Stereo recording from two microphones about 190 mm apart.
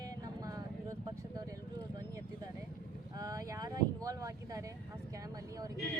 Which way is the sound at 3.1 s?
15° right (ahead or behind).